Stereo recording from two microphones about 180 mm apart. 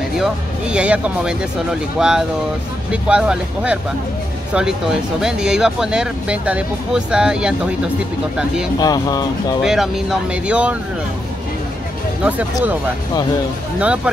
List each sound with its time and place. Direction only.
0.2 s speech: 5° right (ahead or behind)
5.2 s speech: 5° right (ahead or behind)
8.7 s speech: 20° left (ahead or behind)
9.6 s speech: centre (ahead or behind)
12.2 s speech: 10° right (ahead or behind)
13.7 s speech: 5° right (ahead or behind)